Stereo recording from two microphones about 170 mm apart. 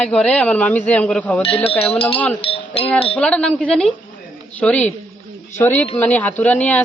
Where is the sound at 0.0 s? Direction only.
5° left (ahead or behind).